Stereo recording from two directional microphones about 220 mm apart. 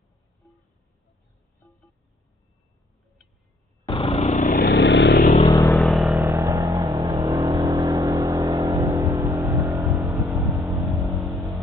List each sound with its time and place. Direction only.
0.4 s a sound: centre (ahead or behind)
3.9 s lawn mower: 25° left (ahead or behind)
4.6 s vehicle: 50° left (ahead or behind)
5.7 s vehicle: centre (ahead or behind)
6.2 s vehicle: 15° right (ahead or behind)